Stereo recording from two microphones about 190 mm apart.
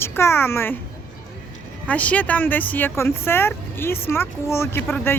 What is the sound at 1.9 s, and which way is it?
Speech, 10° left (ahead or behind).